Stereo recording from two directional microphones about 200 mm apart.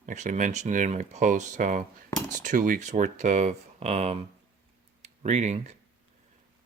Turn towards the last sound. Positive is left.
turn(degrees=-35)  # may be behind; listen again after turning